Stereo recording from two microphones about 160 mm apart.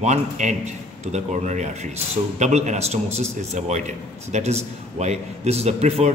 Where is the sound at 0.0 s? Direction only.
45° right (ahead or behind).